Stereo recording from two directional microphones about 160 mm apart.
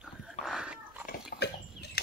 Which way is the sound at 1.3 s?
65° left (ahead or behind).